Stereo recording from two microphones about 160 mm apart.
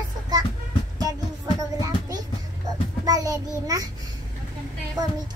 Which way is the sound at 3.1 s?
25° right (ahead or behind).